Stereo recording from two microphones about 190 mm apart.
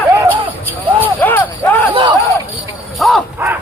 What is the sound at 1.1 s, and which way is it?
Basketball bounce, 10° left (ahead or behind).